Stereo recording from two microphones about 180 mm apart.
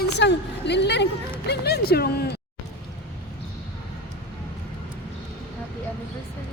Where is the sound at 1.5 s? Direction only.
60° left (ahead or behind).